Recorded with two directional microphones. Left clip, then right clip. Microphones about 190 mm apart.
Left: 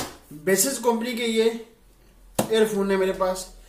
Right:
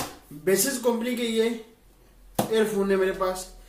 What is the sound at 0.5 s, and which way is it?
Speech, 10° left (ahead or behind).